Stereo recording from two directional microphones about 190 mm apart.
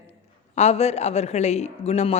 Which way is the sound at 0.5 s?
35° left (ahead or behind).